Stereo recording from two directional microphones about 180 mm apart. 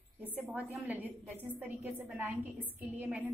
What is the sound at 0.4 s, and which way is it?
A woman's voice, 10° right (ahead or behind).